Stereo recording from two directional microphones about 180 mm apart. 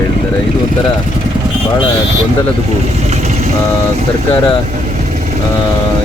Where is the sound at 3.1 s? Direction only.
40° right (ahead or behind).